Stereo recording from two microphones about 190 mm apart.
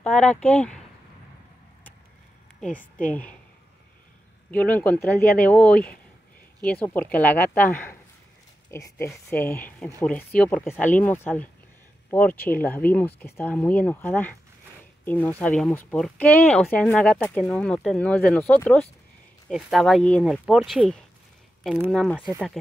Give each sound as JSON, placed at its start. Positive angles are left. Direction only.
{"t": 0.0, "sound": "speech", "side_deg": 5}
{"t": 3.0, "sound": "speech", "side_deg": 5}
{"t": 4.5, "sound": "speech", "side_deg": 10}